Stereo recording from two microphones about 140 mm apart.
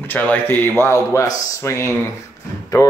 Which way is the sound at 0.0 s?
15° left (ahead or behind).